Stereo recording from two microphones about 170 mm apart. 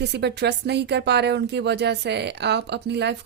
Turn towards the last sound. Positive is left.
turn(degrees=-85)